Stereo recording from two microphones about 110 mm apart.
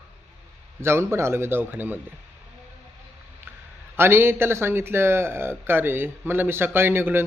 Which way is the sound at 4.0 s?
20° right (ahead or behind).